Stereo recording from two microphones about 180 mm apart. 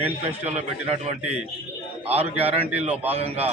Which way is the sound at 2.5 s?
30° right (ahead or behind).